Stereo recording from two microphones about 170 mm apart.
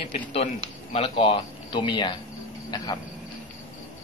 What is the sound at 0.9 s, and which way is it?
Speech, 30° left (ahead or behind).